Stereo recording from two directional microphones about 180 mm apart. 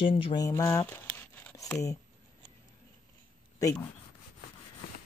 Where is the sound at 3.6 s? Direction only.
20° left (ahead or behind).